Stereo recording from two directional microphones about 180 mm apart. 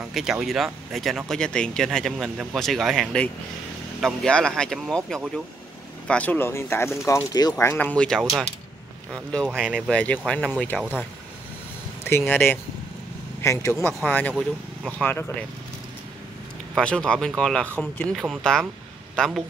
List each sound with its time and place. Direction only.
0.1 s speech: centre (ahead or behind)
9.6 s speech: centre (ahead or behind)
12.0 s speech: 15° left (ahead or behind)
16.7 s speech: 5° left (ahead or behind)